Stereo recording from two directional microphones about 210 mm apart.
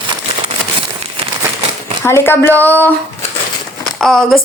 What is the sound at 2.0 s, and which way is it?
A woman's voice, 10° left (ahead or behind).